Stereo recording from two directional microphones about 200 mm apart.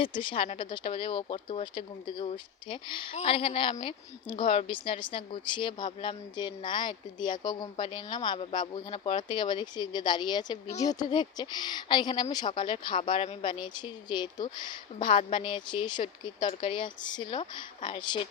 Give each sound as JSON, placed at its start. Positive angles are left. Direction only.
{"t": 0.0, "sound": "speech", "side_deg": 25}